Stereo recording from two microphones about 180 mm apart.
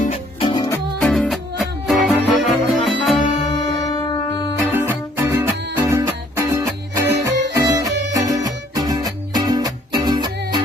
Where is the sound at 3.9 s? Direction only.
20° left (ahead or behind).